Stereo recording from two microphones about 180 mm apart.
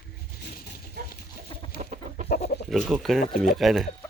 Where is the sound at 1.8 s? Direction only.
45° right (ahead or behind).